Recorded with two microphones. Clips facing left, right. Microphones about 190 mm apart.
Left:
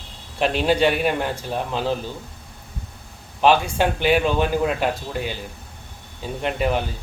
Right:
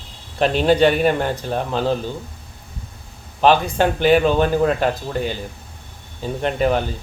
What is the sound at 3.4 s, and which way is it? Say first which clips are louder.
Speech: right 2 dB; 5° left (ahead or behind).